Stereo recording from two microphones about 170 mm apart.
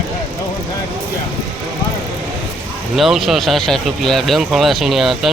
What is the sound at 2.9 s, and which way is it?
Speech, centre (ahead or behind).